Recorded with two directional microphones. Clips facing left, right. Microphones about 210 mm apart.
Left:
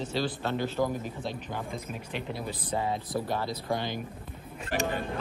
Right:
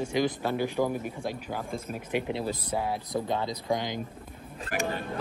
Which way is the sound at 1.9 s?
50° right (ahead or behind).